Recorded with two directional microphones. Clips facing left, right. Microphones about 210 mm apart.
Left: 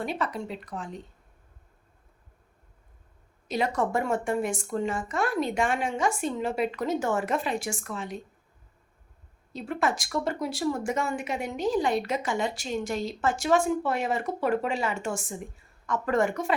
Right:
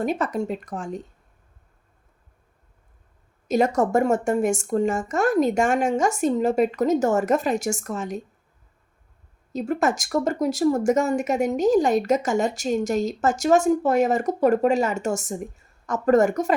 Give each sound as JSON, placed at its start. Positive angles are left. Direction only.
{"t": 0.0, "sound": "speech", "side_deg": -45}
{"t": 3.5, "sound": "speech", "side_deg": -45}
{"t": 9.5, "sound": "speech", "side_deg": -45}